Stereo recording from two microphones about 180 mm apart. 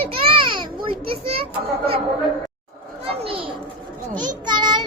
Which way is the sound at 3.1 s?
30° right (ahead or behind).